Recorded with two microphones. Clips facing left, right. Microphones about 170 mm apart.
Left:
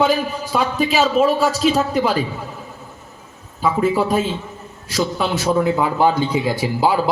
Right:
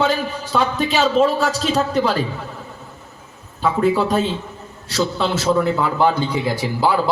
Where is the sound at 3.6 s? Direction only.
5° left (ahead or behind).